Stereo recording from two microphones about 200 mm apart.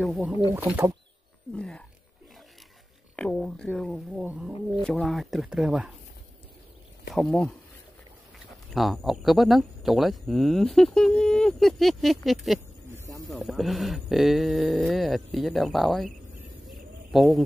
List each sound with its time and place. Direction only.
0.0 s speech: centre (ahead or behind)
0.6 s speech: 10° right (ahead or behind)
1.5 s speech: 5° left (ahead or behind)
3.2 s speech: 5° left (ahead or behind)
7.2 s speech: 5° left (ahead or behind)
12.9 s a sound: 15° right (ahead or behind)
13.3 s speech: centre (ahead or behind)
16.6 s a sound: centre (ahead or behind)